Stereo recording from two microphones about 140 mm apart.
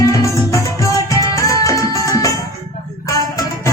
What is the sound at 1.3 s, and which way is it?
Music, 25° left (ahead or behind).